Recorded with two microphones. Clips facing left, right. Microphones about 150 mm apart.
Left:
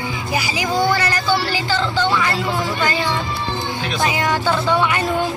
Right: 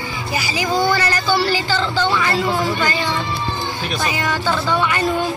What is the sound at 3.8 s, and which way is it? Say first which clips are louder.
Music: left 2 dB; 5° right (ahead or behind).